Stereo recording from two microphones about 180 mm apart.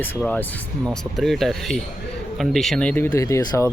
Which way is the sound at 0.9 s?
Centre (ahead or behind).